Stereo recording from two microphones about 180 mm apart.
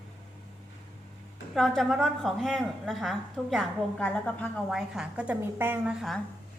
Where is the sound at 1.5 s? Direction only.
Centre (ahead or behind).